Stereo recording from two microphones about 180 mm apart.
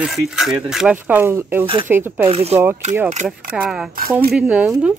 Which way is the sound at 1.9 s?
10° right (ahead or behind).